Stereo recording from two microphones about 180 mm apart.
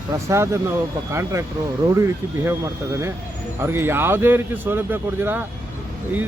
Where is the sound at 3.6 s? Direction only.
10° right (ahead or behind).